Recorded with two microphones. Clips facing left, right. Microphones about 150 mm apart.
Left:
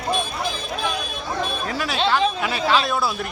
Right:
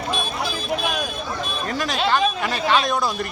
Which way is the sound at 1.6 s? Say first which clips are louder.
Right 2 dB; 5° left (ahead or behind).